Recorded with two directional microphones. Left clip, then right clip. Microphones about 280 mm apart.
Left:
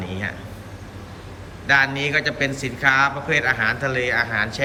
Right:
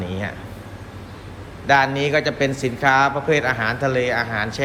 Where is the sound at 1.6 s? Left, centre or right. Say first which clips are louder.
Right 1 dB; centre.